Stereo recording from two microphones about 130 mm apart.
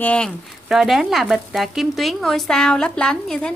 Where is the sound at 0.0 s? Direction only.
10° left (ahead or behind).